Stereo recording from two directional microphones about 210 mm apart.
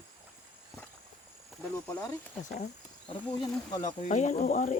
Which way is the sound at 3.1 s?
25° left (ahead or behind).